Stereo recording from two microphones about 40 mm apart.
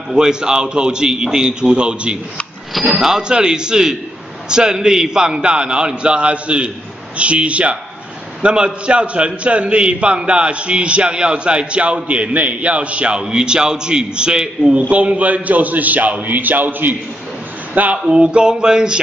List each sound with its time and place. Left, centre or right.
0.1 s a man's voice: centre
2.9 s a man's voice: centre
14.9 s a man's voice: right
17.9 s a sound: centre
18.2 s a man's voice: right